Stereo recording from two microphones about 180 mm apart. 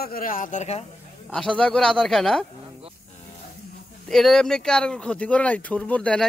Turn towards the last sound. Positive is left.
turn(degrees=5)  # may be behind; listen again after turning